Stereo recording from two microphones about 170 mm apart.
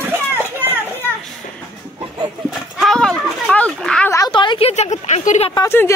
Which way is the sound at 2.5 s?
Centre (ahead or behind).